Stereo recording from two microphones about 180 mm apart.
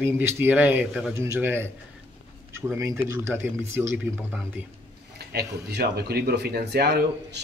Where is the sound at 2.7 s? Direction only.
15° right (ahead or behind).